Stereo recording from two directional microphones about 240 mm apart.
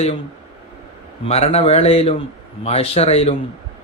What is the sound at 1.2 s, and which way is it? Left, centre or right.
Speech, left.